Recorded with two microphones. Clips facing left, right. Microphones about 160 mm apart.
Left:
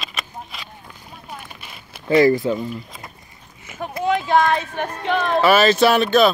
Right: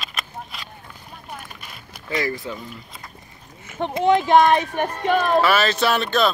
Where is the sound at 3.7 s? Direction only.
25° right (ahead or behind).